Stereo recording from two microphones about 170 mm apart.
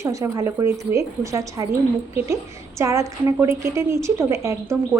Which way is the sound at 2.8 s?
15° right (ahead or behind).